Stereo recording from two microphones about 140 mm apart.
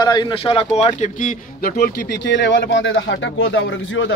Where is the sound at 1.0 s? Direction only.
70° left (ahead or behind).